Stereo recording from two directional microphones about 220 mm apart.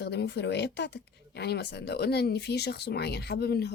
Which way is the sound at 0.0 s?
50° left (ahead or behind).